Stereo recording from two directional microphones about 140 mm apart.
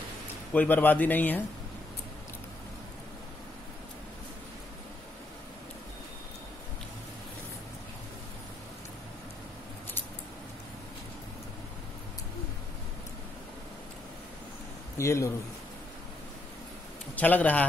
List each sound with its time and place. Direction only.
0.5 s speech: 15° left (ahead or behind)
15.0 s speech: 20° left (ahead or behind)
17.1 s speech: 10° left (ahead or behind)